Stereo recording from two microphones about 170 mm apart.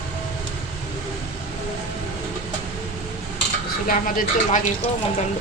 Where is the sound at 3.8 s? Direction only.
55° left (ahead or behind).